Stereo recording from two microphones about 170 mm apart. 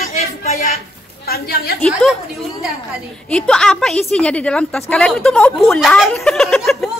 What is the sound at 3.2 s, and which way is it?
A woman's voice, 5° left (ahead or behind).